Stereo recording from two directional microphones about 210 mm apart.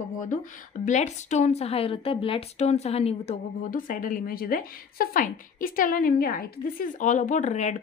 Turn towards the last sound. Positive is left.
turn(degrees=35)  # may be behind; listen again after turning